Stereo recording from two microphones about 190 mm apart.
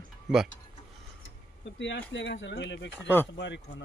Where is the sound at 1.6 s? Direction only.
70° left (ahead or behind).